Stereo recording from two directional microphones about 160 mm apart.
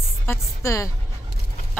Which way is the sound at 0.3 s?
20° left (ahead or behind).